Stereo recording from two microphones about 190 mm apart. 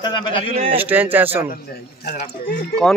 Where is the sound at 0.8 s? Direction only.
10° right (ahead or behind).